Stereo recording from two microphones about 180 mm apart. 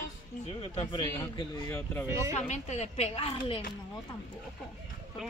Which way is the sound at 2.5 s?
40° left (ahead or behind).